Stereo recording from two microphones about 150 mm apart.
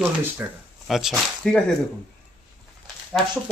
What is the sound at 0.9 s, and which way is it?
Speech, centre (ahead or behind).